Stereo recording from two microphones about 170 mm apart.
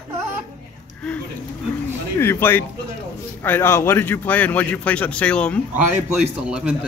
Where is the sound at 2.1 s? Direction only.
15° left (ahead or behind).